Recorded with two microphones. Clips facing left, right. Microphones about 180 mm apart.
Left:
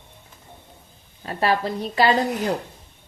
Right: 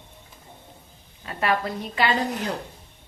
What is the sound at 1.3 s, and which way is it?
Speech, 35° left (ahead or behind).